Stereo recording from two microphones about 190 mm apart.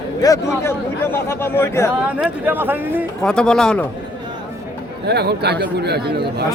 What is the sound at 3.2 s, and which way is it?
Speech, 5° left (ahead or behind).